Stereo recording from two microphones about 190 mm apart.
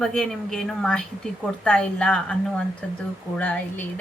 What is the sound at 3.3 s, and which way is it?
Speech, 10° left (ahead or behind).